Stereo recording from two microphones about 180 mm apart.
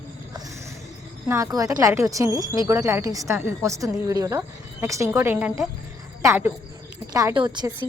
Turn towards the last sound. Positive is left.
turn(degrees=-25)  # may be behind; listen again after turning